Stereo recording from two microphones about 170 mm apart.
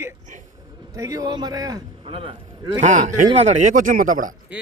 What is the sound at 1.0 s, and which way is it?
Speech, 20° right (ahead or behind).